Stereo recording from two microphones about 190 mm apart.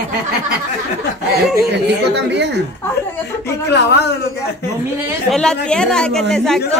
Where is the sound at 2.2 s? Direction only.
65° right (ahead or behind).